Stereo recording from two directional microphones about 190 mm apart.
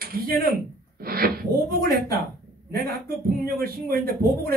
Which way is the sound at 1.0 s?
50° right (ahead or behind).